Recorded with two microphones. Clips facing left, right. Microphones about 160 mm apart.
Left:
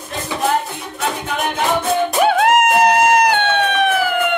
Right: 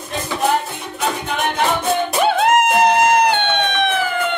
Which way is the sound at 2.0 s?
5° left (ahead or behind).